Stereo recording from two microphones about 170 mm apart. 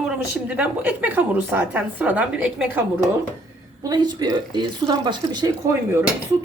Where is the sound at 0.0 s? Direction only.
5° right (ahead or behind).